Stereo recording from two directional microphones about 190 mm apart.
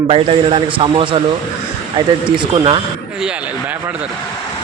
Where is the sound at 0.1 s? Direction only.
30° right (ahead or behind).